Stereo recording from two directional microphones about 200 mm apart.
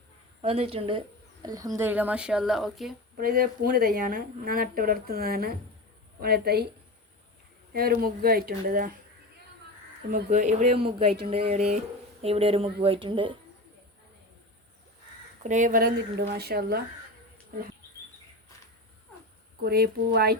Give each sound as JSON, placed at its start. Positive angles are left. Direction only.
{"t": 0.4, "sound": "a woman's voice", "side_deg": -30}
{"t": 3.2, "sound": "a woman's voice", "side_deg": -45}
{"t": 7.7, "sound": "a woman's voice", "side_deg": -45}
{"t": 10.1, "sound": "speech", "side_deg": -40}
{"t": 15.4, "sound": "a woman's voice", "side_deg": -40}
{"t": 19.6, "sound": "a woman's voice", "side_deg": -50}